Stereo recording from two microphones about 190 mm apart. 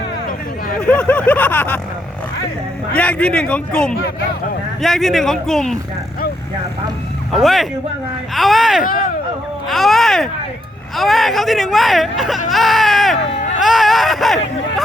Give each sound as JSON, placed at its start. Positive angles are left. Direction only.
{"t": 0.8, "sound": "speech", "side_deg": 5}
{"t": 2.9, "sound": "speech", "side_deg": 5}
{"t": 7.3, "sound": "speech", "side_deg": 0}
{"t": 8.8, "sound": "speech", "side_deg": 50}
{"t": 9.6, "sound": "speech", "side_deg": 0}